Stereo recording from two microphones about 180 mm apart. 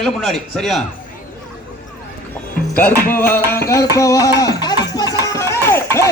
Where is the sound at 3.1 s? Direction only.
10° left (ahead or behind).